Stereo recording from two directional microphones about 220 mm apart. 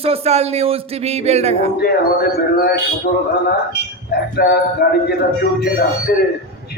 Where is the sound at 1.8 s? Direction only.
45° left (ahead or behind).